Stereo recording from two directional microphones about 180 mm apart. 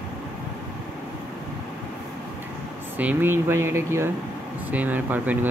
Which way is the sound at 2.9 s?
10° right (ahead or behind).